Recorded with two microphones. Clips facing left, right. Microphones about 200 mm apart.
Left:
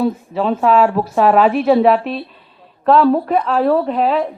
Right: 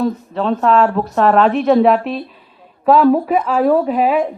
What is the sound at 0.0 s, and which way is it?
A woman's voice, 5° left (ahead or behind).